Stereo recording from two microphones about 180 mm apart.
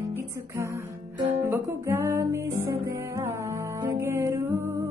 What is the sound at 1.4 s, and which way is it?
Music, 10° right (ahead or behind).